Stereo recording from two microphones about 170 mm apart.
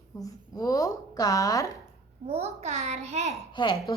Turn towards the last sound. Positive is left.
turn(degrees=25)  # may be behind; listen again after turning